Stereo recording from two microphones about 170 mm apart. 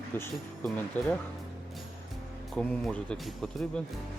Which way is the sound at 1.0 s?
10° left (ahead or behind).